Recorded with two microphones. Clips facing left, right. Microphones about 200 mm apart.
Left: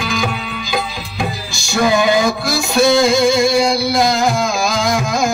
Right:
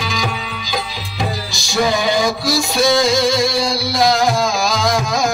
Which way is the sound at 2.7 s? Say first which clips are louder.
Left 4 dB; 55° left (ahead or behind).